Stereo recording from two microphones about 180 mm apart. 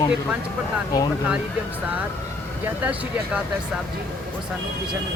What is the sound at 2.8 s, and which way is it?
Speech, 10° right (ahead or behind).